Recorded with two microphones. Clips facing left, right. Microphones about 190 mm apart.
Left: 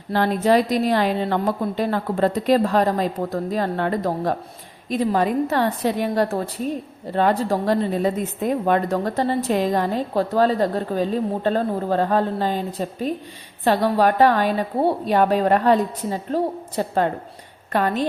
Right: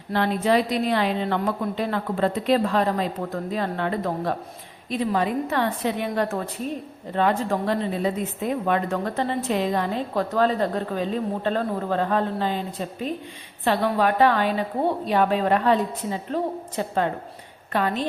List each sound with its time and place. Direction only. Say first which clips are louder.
0.1 s a woman's voice: left 3 dB; 40° left (ahead or behind)